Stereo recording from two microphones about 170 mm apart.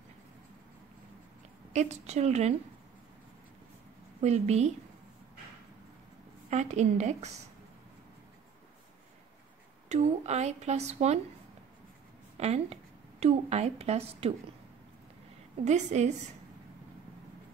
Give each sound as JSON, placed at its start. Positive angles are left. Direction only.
{"t": 1.7, "sound": "speech", "side_deg": -40}
{"t": 4.2, "sound": "speech", "side_deg": -40}
{"t": 6.5, "sound": "a woman's voice", "side_deg": -40}
{"t": 9.8, "sound": "speech", "side_deg": -40}
{"t": 12.4, "sound": "speech", "side_deg": -40}
{"t": 15.6, "sound": "speech", "side_deg": -40}